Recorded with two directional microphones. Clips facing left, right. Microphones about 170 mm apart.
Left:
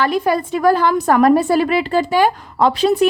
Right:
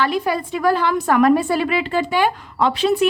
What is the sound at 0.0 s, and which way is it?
A woman's voice, 45° left (ahead or behind).